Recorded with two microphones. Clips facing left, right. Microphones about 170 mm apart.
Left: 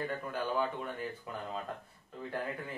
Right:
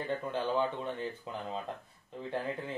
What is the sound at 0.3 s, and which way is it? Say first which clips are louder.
Speech: right 2 dB; 25° right (ahead or behind).